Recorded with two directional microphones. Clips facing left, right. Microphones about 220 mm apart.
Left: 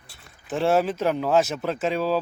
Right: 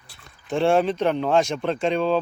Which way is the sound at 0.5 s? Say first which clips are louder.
Right 2 dB; 5° left (ahead or behind).